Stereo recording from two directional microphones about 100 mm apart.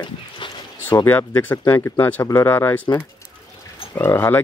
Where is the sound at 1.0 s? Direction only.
20° left (ahead or behind).